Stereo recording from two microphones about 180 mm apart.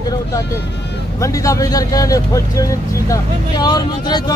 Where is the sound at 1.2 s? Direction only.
15° left (ahead or behind).